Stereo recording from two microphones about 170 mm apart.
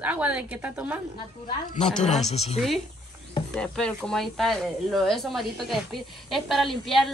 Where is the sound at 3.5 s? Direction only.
5° left (ahead or behind).